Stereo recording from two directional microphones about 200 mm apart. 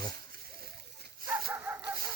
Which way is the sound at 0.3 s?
50° right (ahead or behind).